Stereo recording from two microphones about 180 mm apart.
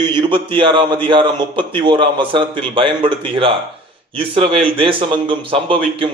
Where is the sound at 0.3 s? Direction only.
25° right (ahead or behind).